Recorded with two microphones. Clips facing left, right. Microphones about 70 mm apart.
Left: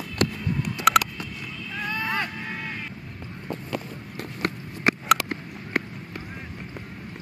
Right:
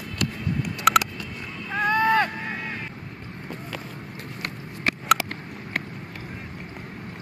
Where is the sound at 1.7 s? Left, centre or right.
Right.